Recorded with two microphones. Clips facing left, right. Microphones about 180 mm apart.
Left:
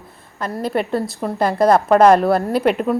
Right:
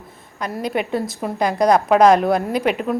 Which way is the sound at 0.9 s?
Centre (ahead or behind).